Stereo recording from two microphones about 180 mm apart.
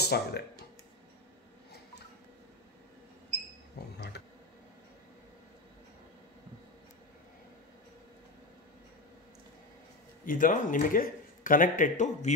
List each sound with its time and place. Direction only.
0.0 s speech: 65° left (ahead or behind)
10.2 s speech: 50° left (ahead or behind)